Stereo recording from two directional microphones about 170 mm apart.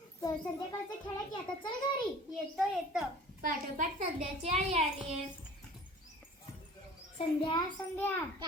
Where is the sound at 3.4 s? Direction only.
55° right (ahead or behind).